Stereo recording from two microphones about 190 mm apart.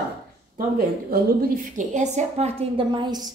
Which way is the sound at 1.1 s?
45° right (ahead or behind).